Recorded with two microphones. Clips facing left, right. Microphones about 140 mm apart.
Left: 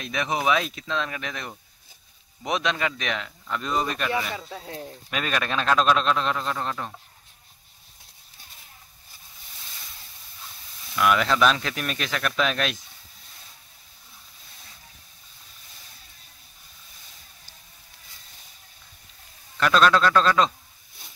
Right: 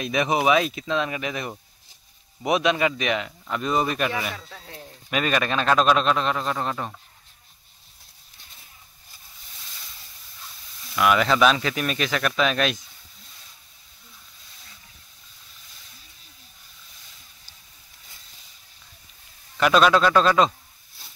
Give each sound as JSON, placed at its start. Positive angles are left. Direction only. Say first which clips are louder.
{"t": 0.0, "sound": "speech", "louder": "right 4 dB", "side_deg": -15}
{"t": 4.4, "sound": "speech", "louder": "left 6 dB", "side_deg": 25}
{"t": 5.1, "sound": "speech", "louder": "right 4 dB", "side_deg": -5}
{"t": 11.0, "sound": "speech", "louder": "right 2 dB", "side_deg": -5}
{"t": 19.6, "sound": "speech", "louder": "right 2 dB", "side_deg": -10}